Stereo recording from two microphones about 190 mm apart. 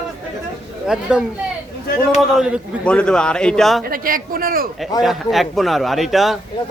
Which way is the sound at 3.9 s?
50° right (ahead or behind).